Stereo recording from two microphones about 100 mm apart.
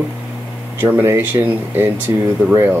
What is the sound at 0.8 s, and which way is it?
Speech, 20° right (ahead or behind).